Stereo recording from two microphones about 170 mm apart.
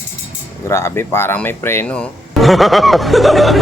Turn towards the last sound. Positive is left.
turn(degrees=0)  # may be behind; listen again after turning